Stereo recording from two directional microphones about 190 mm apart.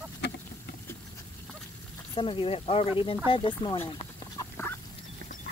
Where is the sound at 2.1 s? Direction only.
25° left (ahead or behind).